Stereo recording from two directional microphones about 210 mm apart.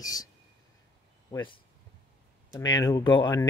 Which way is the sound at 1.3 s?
25° left (ahead or behind).